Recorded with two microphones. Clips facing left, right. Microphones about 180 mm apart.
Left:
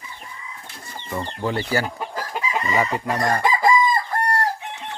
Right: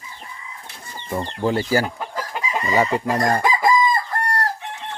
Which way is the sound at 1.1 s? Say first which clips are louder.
Right 4 dB; 10° right (ahead or behind).